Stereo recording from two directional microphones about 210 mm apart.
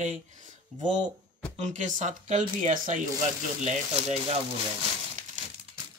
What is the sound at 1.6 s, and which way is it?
Speech, 35° right (ahead or behind).